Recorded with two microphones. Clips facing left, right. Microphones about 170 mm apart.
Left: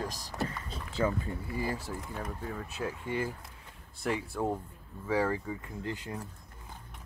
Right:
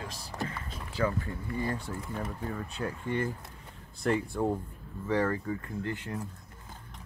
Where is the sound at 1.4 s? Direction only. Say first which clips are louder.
Right 2 dB; 5° left (ahead or behind).